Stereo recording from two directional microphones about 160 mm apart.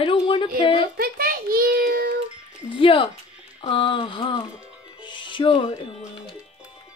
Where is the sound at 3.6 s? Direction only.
30° left (ahead or behind).